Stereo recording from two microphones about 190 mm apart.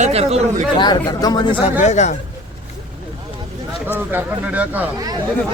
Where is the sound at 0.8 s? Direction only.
20° left (ahead or behind).